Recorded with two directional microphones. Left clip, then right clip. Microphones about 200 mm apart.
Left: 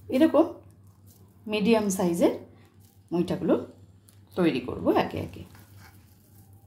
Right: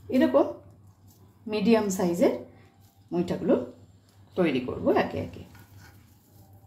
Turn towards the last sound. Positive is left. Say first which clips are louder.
# even
turn(degrees=15)  # may be behind; listen again after turning